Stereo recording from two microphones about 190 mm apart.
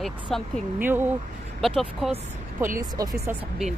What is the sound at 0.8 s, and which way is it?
Speech, 10° right (ahead or behind).